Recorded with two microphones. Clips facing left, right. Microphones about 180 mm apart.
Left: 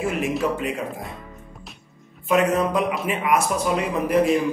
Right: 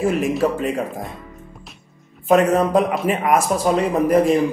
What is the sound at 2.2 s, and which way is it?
Speech, 40° right (ahead or behind).